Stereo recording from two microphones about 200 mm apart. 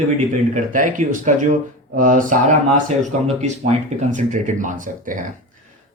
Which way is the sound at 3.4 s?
35° right (ahead or behind).